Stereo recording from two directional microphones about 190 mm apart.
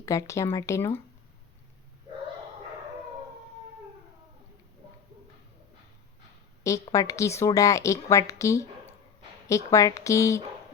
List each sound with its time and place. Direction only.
0.0 s a woman's voice: 15° left (ahead or behind)
6.7 s a woman's voice: 15° left (ahead or behind)